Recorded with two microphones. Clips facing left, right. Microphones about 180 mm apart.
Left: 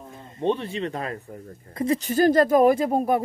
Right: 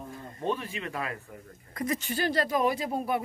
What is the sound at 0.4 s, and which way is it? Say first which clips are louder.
Speech: left 7 dB; 30° left (ahead or behind).